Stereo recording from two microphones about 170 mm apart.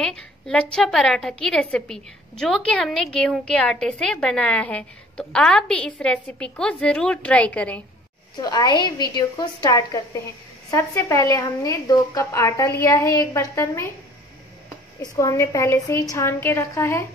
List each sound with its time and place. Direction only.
0.0 s a woman's voice: 5° left (ahead or behind)
8.4 s a woman's voice: 25° left (ahead or behind)
15.0 s a woman's voice: 20° left (ahead or behind)